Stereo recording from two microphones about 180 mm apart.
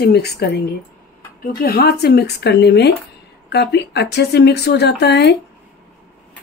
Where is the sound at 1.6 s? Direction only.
60° left (ahead or behind).